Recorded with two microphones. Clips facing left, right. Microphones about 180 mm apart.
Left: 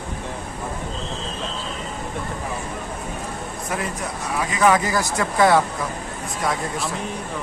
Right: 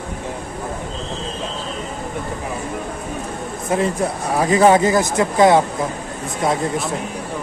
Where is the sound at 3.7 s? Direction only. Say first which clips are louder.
Right 9 dB; 25° right (ahead or behind).